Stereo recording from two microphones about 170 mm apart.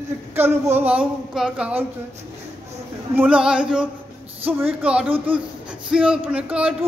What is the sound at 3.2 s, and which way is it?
Speech, 5° right (ahead or behind).